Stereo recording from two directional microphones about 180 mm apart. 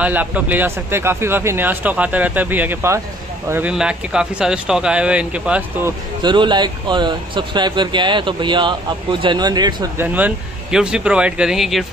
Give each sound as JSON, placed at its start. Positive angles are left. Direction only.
{"t": 0.0, "sound": "speech", "side_deg": -10}
{"t": 6.2, "sound": "speech", "side_deg": -25}
{"t": 9.9, "sound": "speech", "side_deg": -10}